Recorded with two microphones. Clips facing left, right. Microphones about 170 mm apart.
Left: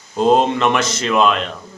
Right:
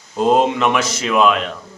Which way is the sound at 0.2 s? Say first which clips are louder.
Left 1 dB; 5° right (ahead or behind).